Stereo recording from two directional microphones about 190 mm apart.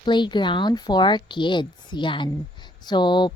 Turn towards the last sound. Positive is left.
turn(degrees=25)  # may be behind; listen again after turning